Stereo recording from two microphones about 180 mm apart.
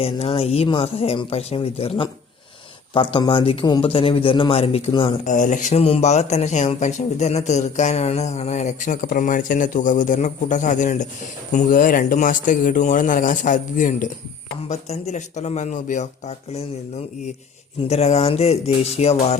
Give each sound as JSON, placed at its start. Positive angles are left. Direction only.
{"t": 0.0, "sound": "a man's voice", "side_deg": 35}
{"t": 5.3, "sound": "a man's voice", "side_deg": 45}
{"t": 17.8, "sound": "a man's voice", "side_deg": 35}